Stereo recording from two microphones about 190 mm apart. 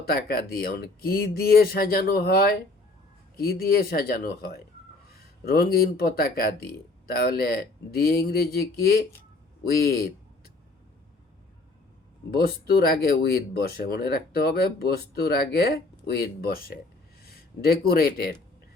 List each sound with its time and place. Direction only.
0.0 s speech: 55° left (ahead or behind)
12.4 s speech: 55° left (ahead or behind)